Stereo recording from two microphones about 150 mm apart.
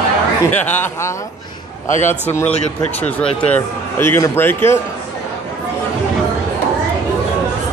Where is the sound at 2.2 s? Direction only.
10° left (ahead or behind).